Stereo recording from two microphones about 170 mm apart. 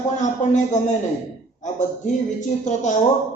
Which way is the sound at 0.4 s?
45° left (ahead or behind).